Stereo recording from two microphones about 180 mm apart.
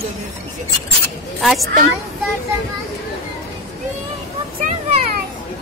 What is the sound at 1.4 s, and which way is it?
Speech, centre (ahead or behind).